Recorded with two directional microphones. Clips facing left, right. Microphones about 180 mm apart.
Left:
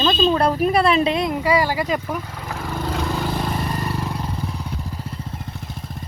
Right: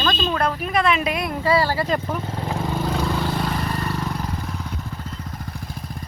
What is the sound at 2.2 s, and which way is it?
Vehicle, 30° right (ahead or behind).